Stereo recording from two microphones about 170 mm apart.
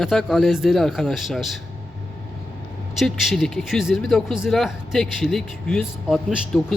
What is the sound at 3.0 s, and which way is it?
Speech, centre (ahead or behind).